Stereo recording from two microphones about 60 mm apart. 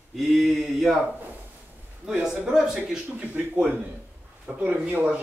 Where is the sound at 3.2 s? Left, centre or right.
Right.